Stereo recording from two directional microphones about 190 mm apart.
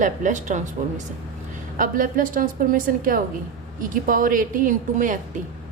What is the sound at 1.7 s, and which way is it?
A woman's voice, 45° right (ahead or behind).